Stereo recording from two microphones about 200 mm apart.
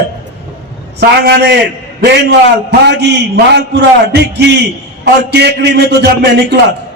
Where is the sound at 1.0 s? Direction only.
55° right (ahead or behind).